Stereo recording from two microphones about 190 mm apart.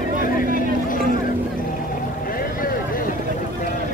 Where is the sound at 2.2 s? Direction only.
50° left (ahead or behind).